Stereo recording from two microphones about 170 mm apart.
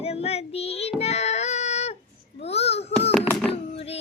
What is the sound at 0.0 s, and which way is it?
Child singing, 35° left (ahead or behind).